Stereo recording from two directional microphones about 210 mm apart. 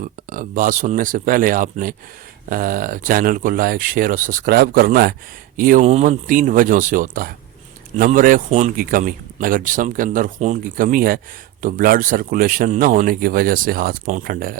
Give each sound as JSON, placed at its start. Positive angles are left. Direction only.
{"t": 0.0, "sound": "speech", "side_deg": -40}